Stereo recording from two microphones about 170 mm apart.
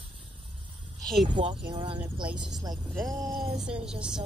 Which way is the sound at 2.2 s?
5° right (ahead or behind).